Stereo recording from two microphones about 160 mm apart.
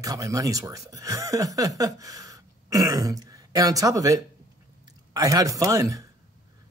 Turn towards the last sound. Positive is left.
turn(degrees=-20)  # may be behind; listen again after turning